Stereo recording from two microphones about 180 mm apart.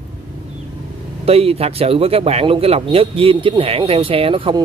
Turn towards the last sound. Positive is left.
turn(degrees=-30)  # may be behind; listen again after turning